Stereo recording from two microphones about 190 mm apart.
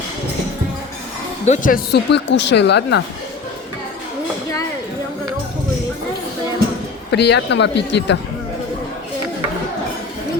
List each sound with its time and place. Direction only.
1.5 s speech: 45° left (ahead or behind); by 3.0 s 65° left (ahead or behind)
7.1 s speech: 65° left (ahead or behind)